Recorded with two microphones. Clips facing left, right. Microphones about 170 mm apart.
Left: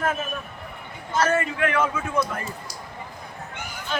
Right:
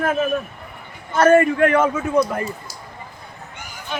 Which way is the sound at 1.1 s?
55° right (ahead or behind).